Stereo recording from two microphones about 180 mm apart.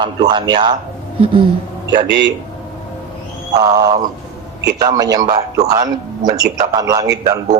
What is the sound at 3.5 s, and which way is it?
A man's voice, 20° right (ahead or behind).